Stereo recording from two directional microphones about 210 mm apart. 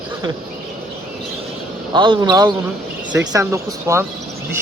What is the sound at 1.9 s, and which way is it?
Speech, 20° right (ahead or behind).